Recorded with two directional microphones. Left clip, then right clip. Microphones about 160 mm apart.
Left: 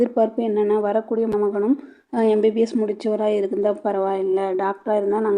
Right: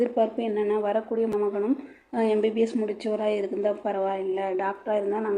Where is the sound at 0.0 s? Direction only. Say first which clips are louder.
Left 5 dB; 40° left (ahead or behind).